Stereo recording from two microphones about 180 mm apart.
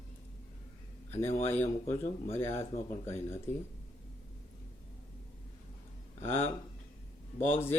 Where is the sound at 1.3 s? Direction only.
35° left (ahead or behind).